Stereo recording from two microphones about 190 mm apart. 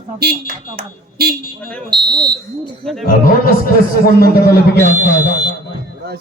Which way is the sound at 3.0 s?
50° left (ahead or behind).